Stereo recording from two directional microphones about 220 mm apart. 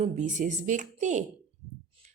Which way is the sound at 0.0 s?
35° right (ahead or behind).